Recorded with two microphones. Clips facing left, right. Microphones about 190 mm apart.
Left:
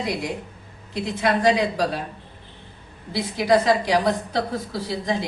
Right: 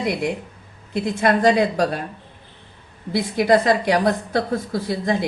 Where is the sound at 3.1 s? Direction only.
55° right (ahead or behind).